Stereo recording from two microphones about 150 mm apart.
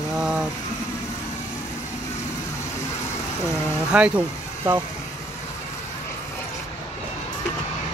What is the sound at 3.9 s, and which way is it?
Speech, 10° right (ahead or behind).